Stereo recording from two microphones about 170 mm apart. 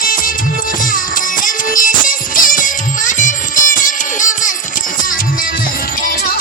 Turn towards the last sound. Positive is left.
turn(degrees=50)  # may be behind; listen again after turning